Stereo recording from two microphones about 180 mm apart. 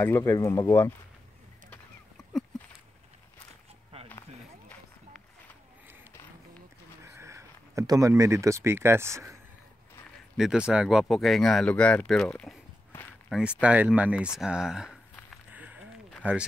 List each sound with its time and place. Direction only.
0.0 s speech: 15° left (ahead or behind)
7.2 s speech: 15° right (ahead or behind)
10.3 s speech: 5° right (ahead or behind)
15.5 s a sound: 10° right (ahead or behind)
16.2 s speech: 10° right (ahead or behind)